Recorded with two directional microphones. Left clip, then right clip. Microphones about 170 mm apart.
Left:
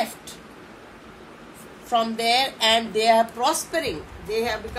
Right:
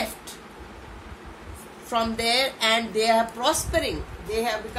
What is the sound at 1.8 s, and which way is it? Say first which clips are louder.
A woman's voice: left 3 dB; centre (ahead or behind).